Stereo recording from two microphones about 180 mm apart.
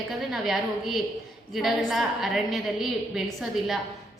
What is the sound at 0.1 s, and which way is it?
A woman's voice, centre (ahead or behind).